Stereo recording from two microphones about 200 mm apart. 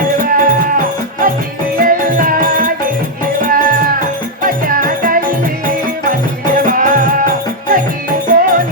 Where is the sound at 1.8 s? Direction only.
45° right (ahead or behind).